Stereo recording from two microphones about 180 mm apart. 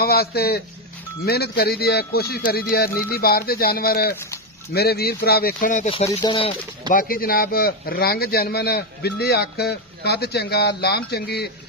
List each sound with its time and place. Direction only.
0.0 s a man's voice: 60° left (ahead or behind)
6.0 s speech: 30° left (ahead or behind)
6.9 s a man's voice: 50° left (ahead or behind)